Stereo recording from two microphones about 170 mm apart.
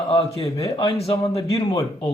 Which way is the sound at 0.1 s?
35° left (ahead or behind).